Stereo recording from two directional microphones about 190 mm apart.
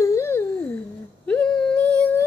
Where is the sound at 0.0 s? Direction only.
15° left (ahead or behind).